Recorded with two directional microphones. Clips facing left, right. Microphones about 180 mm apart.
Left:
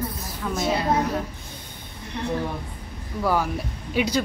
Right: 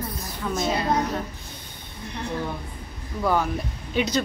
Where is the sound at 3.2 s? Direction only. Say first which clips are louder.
Even; 5° left (ahead or behind).